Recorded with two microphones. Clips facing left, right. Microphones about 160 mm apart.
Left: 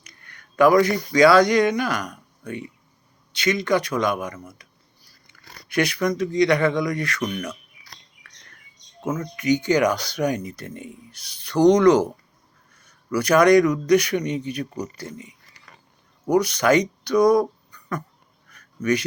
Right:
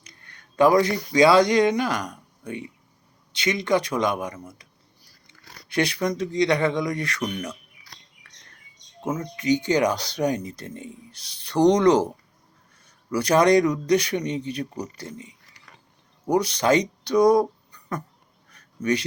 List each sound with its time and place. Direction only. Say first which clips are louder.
0.0 s a sound: left 1 dB; 25° right (ahead or behind)
1.1 s a man's voice: left 1 dB; 25° right (ahead or behind)
5.6 s a man's voice: left 2 dB; 25° right (ahead or behind)
8.2 s chirp: left 3 dB; 25° right (ahead or behind)
9.1 s a man's voice: left 1 dB; 25° right (ahead or behind)
16.3 s speech: left 2 dB; 30° right (ahead or behind)
18.4 s a sound: left 2 dB; 30° right (ahead or behind)